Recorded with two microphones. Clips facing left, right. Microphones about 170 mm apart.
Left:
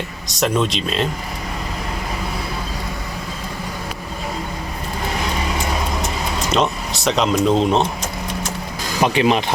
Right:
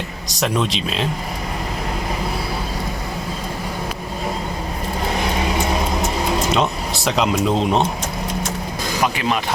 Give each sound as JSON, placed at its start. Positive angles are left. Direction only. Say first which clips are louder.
{"t": 0.3, "sound": "speech", "louder": "left 2 dB", "side_deg": 0}
{"t": 6.5, "sound": "speech", "louder": "even", "side_deg": 0}
{"t": 9.0, "sound": "speech", "louder": "left 6 dB", "side_deg": 20}